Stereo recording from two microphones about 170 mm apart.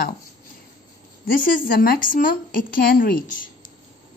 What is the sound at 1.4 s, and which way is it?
Speech, 55° left (ahead or behind).